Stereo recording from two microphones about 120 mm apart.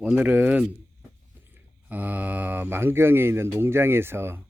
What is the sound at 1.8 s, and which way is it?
Speech, 15° right (ahead or behind).